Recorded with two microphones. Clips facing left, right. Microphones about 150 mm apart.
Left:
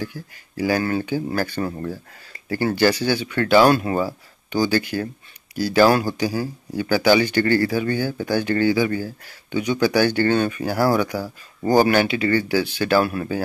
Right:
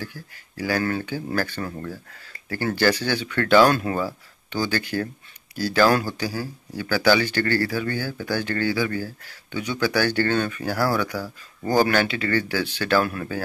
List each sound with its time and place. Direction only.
0.0 s speech: 15° left (ahead or behind)